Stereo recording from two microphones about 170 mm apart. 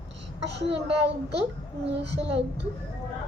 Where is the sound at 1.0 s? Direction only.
85° right.